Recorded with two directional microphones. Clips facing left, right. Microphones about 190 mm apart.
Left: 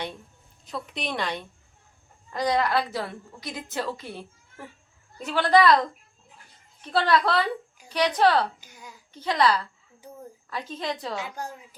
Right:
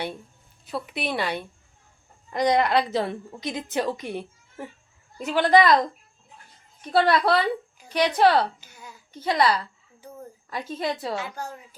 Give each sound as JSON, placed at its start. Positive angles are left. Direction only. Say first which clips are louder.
{"t": 0.6, "sound": "a woman's voice", "louder": "right 3 dB", "side_deg": -5}
{"t": 6.9, "sound": "a woman's voice", "louder": "right 2 dB", "side_deg": -10}
{"t": 8.6, "sound": "a sound", "louder": "right 1 dB", "side_deg": 15}
{"t": 9.1, "sound": "a woman's voice", "louder": "right 1 dB", "side_deg": -10}
{"t": 11.2, "sound": "a woman's voice", "louder": "right 1 dB", "side_deg": 15}